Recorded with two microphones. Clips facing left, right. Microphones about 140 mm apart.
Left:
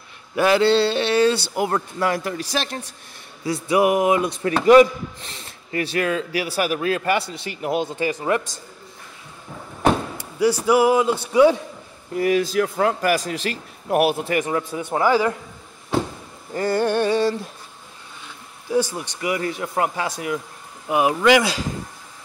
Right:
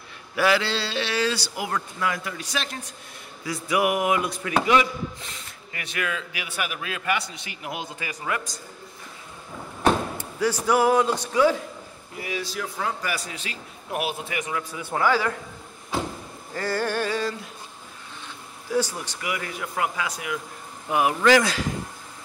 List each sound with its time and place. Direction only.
0.6 s speech: 55° left (ahead or behind); by 2.8 s 35° left (ahead or behind)
3.4 s a sound: 30° left (ahead or behind)
4.6 s a man's voice: 35° left (ahead or behind)
10.1 s speech: 10° left (ahead or behind)
12.2 s a man's voice: 50° left (ahead or behind)
14.2 s a man's voice: 35° left (ahead or behind)
14.8 s speech: 20° left (ahead or behind)
16.5 s a sound: 20° left (ahead or behind)
18.7 s speech: 15° left (ahead or behind)
19.2 s a man's voice: 30° left (ahead or behind)
20.9 s speech: 20° left (ahead or behind)